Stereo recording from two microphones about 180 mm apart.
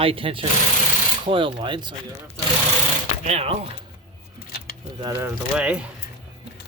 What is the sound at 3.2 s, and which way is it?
Speech, 35° right (ahead or behind).